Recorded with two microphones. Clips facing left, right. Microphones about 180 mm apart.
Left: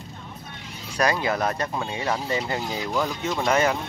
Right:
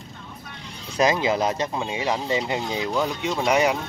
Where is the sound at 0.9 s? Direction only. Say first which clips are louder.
Right 3 dB; 20° right (ahead or behind).